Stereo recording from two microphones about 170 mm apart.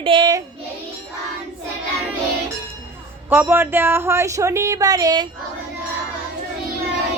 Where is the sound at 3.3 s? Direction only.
10° right (ahead or behind).